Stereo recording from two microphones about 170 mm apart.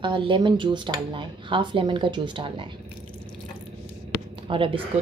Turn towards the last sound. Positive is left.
turn(degrees=-30)  # may be behind; listen again after turning